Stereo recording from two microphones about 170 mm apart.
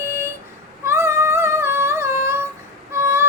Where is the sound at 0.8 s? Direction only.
15° right (ahead or behind).